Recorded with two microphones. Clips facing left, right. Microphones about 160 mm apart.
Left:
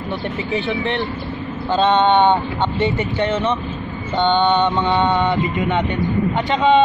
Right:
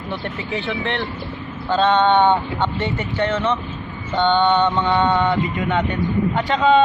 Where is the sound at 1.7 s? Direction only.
20° left (ahead or behind).